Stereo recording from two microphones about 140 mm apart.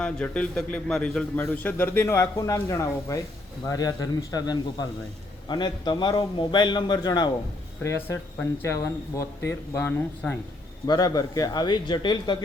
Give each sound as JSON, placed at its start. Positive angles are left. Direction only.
{"t": 0.0, "sound": "a man's voice", "side_deg": 5}
{"t": 7.9, "sound": "speech", "side_deg": 15}
{"t": 10.8, "sound": "speech", "side_deg": 30}